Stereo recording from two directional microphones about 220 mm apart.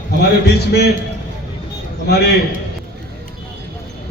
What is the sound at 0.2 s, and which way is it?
Speech, 45° left (ahead or behind).